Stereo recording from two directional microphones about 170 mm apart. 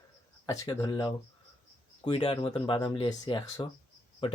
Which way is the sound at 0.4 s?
20° left (ahead or behind).